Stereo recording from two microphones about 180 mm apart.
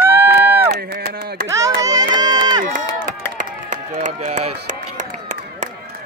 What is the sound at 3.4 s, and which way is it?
Run, 45° right (ahead or behind).